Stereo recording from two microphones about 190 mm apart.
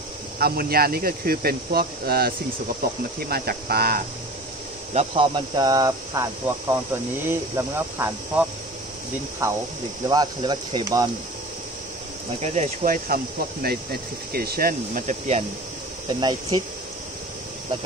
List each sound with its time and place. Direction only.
0.4 s speech: 55° right (ahead or behind)
4.9 s speech: 25° right (ahead or behind)
10.0 s speech: 20° right (ahead or behind)
12.4 s speech: 40° right (ahead or behind)
16.1 s speech: 25° right (ahead or behind)